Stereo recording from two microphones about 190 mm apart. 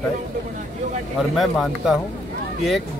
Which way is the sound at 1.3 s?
Centre (ahead or behind).